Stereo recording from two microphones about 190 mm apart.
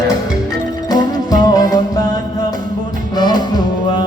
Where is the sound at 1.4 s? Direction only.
20° left (ahead or behind).